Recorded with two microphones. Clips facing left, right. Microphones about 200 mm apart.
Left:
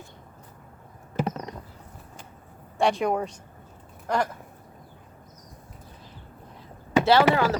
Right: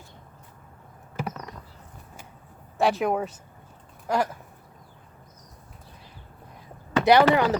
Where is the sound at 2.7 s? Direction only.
Centre (ahead or behind).